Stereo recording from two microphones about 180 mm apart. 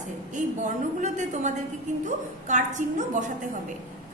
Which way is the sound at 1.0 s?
40° right (ahead or behind).